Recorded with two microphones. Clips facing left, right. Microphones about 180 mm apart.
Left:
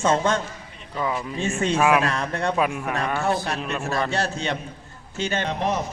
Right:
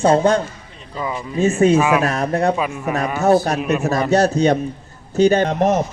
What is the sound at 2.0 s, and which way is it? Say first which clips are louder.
Speech: right 7 dB; 40° right (ahead or behind).